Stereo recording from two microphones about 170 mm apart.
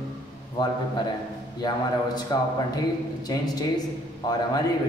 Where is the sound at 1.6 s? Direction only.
25° left (ahead or behind).